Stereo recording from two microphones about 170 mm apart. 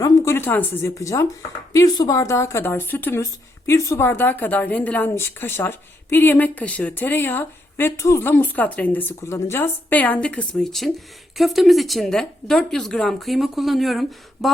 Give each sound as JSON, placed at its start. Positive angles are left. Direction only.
{"t": 0.0, "sound": "a woman's voice", "side_deg": 15}